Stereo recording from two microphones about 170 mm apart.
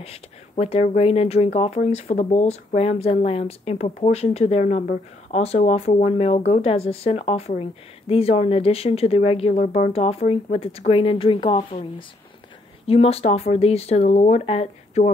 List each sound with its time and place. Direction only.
0.0 s speech: 35° left (ahead or behind)